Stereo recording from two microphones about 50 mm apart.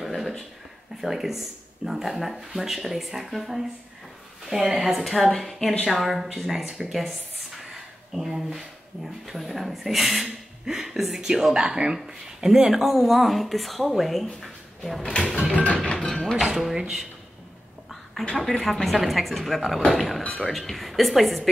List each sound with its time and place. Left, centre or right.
0.0 s a sound: centre
1.0 s speech: centre
6.9 s a sound: centre
9.2 s speech: centre
15.5 s music: left
16.4 s speech: centre
18.4 s speech: centre